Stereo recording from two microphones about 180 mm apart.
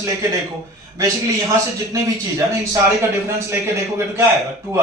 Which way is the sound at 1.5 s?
20° right (ahead or behind).